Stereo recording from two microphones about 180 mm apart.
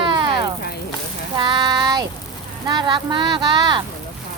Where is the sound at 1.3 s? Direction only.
25° right (ahead or behind).